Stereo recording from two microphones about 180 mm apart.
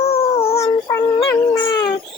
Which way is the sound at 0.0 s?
35° left (ahead or behind).